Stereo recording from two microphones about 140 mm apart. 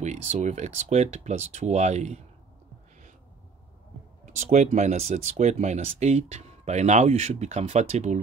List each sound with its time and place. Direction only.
0.0 s speech: 55° right (ahead or behind)
4.6 s speech: 55° right (ahead or behind)